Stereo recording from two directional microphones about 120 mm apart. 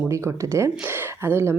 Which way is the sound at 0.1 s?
25° right (ahead or behind).